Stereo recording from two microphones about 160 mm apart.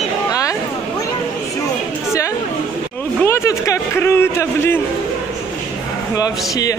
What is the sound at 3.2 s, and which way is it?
A man's voice, 15° left (ahead or behind).